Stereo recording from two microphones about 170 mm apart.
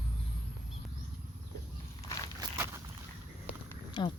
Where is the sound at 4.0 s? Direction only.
30° left (ahead or behind).